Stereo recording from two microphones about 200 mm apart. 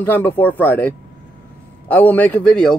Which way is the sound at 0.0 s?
10° left (ahead or behind).